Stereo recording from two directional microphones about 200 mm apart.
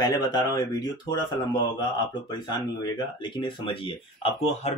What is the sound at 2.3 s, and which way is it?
Speech, 20° left (ahead or behind).